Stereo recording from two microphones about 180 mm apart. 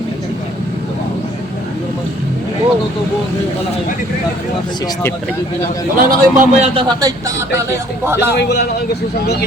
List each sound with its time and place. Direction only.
6.0 s a man's voice: 50° right (ahead or behind)
6.6 s speech: 25° right (ahead or behind)
8.4 s a man's voice: 65° left (ahead or behind)